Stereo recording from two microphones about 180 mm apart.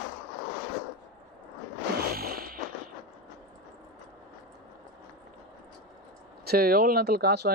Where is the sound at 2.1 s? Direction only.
55° right (ahead or behind).